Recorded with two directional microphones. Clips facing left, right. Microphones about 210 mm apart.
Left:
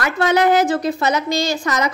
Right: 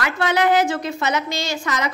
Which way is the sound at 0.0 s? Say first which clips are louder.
Left 4 dB; 40° left (ahead or behind).